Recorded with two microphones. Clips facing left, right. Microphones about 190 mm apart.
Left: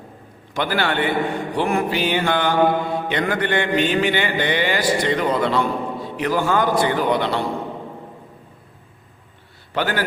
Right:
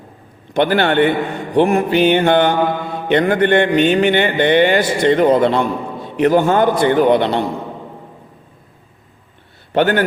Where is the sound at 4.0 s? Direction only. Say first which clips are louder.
Right 6 dB; 60° right (ahead or behind).